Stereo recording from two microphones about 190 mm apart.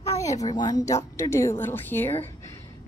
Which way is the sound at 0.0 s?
15° left (ahead or behind).